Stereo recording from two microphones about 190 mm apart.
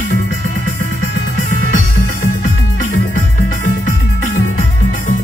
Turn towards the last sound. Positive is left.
turn(degrees=45)  # may be behind; listen again after turning